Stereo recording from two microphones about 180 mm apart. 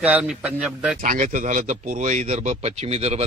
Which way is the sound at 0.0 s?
5° right (ahead or behind).